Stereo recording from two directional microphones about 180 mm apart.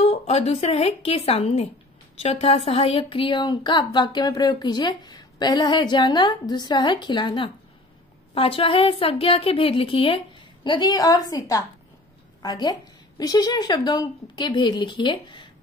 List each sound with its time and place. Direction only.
0.0 s a woman's voice: 35° left (ahead or behind)